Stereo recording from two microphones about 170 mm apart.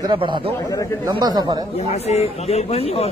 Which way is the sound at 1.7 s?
40° left (ahead or behind).